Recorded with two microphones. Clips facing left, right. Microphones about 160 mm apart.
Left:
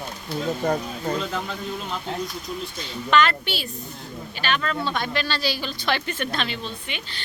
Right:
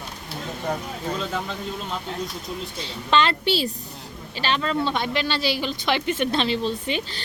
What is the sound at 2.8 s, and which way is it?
A woman's voice, 25° right (ahead or behind).